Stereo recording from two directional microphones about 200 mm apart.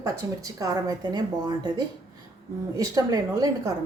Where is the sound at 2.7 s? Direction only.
15° right (ahead or behind).